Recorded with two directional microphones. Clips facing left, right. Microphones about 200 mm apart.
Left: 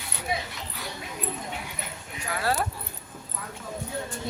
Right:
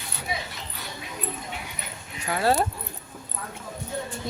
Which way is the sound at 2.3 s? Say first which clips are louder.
Right 5 dB; 25° right (ahead or behind).